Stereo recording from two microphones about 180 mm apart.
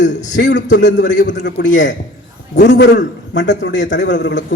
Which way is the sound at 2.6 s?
70° left (ahead or behind).